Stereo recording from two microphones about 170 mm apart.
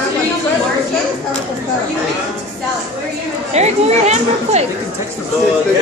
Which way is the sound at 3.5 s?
40° right (ahead or behind).